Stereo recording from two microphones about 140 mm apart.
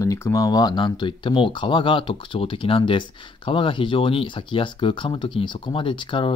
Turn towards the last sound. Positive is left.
turn(degrees=35)  # may be behind; listen again after turning